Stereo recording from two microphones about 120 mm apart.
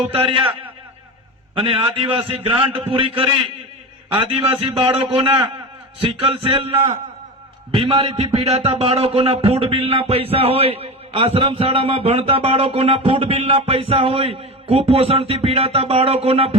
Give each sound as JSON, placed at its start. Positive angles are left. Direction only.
{"t": 0.1, "sound": "a man's voice", "side_deg": -50}
{"t": 1.5, "sound": "a man's voice", "side_deg": -50}